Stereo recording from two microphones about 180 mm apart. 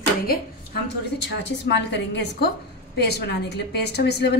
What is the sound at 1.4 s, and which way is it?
A woman's voice, 70° left (ahead or behind).